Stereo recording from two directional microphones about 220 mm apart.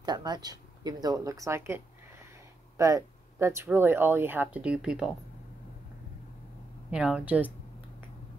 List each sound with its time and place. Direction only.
0.0 s speech: 20° right (ahead or behind)
2.8 s speech: 15° right (ahead or behind)
6.9 s a woman's voice: 5° right (ahead or behind)